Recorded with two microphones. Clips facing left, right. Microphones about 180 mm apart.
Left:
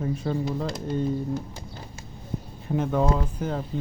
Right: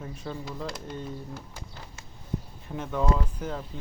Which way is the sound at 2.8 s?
40° left (ahead or behind).